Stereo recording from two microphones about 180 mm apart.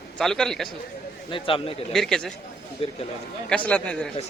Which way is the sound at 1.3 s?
30° left (ahead or behind).